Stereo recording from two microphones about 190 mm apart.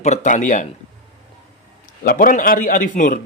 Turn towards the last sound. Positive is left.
turn(degrees=45)  # may be behind; listen again after turning